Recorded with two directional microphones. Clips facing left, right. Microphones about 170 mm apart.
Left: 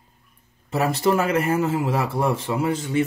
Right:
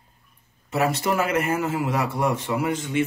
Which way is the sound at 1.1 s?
30° left (ahead or behind).